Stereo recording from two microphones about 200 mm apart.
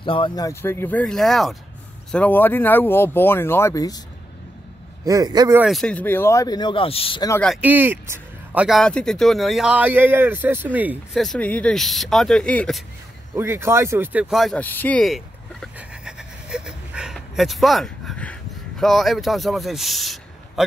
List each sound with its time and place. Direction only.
0.0 s speech: 25° left (ahead or behind)
5.0 s a man's voice: 15° right (ahead or behind)
5.6 s speech: centre (ahead or behind); by 7.2 s 30° left (ahead or behind)
7.2 s speech: 10° left (ahead or behind)
7.6 s speech: 10° right (ahead or behind)
13.3 s a sound: 10° right (ahead or behind)